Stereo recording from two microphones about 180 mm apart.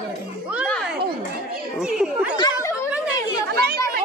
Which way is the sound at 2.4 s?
20° left (ahead or behind).